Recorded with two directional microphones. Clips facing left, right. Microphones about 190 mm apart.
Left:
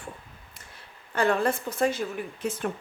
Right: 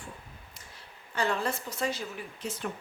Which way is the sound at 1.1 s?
55° left (ahead or behind).